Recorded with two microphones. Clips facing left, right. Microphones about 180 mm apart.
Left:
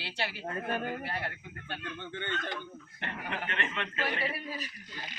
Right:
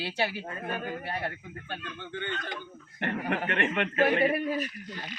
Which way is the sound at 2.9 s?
55° right (ahead or behind).